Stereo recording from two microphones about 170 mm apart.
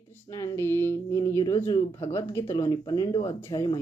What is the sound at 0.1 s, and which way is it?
Speech, 15° left (ahead or behind).